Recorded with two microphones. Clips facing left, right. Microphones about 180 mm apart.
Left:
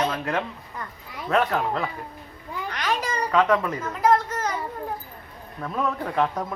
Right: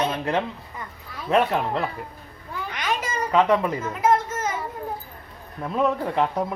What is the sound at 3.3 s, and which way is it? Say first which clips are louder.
Speech: right 2 dB; 25° right (ahead or behind).